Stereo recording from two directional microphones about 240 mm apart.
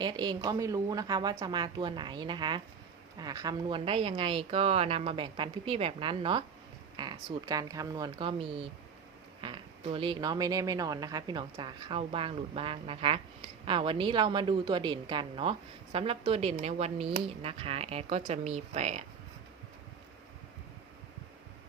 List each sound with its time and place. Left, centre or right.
0.0 s speech: centre